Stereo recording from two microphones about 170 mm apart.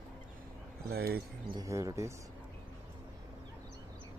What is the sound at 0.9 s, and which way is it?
Speech, 65° right (ahead or behind).